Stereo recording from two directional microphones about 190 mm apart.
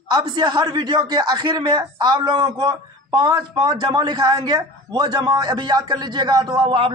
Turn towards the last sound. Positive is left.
turn(degrees=-25)  # may be behind; listen again after turning